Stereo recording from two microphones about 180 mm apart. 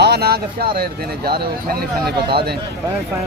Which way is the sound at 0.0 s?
65° right (ahead or behind).